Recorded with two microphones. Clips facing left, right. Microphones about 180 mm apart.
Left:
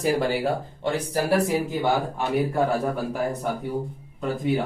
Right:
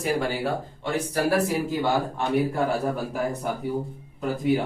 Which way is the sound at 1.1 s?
20° left (ahead or behind).